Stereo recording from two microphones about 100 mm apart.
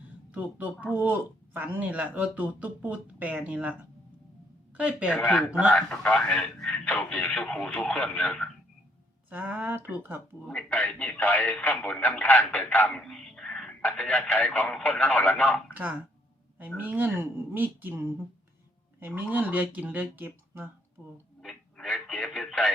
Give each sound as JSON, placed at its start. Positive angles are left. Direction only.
{"t": 0.3, "sound": "speech", "side_deg": -15}
{"t": 4.8, "sound": "speech", "side_deg": -10}
{"t": 5.1, "sound": "speech", "side_deg": 15}
{"t": 5.5, "sound": "speech", "side_deg": -15}
{"t": 5.7, "sound": "speech", "side_deg": 10}
{"t": 9.3, "sound": "speech", "side_deg": -15}
{"t": 10.5, "sound": "speech", "side_deg": 15}
{"t": 15.7, "sound": "a woman's voice", "side_deg": -15}
{"t": 21.4, "sound": "a sound", "side_deg": 5}
{"t": 22.0, "sound": "speech", "side_deg": 5}